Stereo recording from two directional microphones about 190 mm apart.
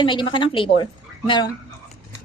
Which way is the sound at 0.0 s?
25° left (ahead or behind).